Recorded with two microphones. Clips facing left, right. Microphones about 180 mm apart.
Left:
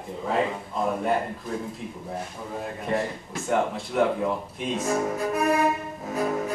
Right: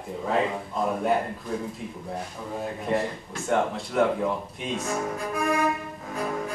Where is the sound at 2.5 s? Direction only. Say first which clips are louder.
Right 1 dB; centre (ahead or behind).